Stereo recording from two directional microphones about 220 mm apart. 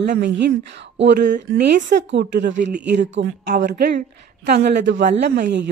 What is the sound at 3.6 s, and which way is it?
Speech, 40° right (ahead or behind).